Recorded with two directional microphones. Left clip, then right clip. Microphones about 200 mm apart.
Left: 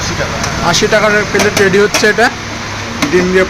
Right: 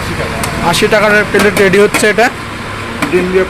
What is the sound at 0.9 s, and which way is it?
Speech, 5° right (ahead or behind).